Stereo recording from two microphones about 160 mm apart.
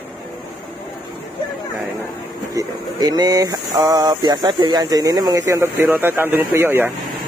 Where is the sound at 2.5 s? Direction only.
25° right (ahead or behind).